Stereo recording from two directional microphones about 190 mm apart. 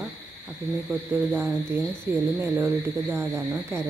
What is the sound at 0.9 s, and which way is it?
Speech, 10° right (ahead or behind).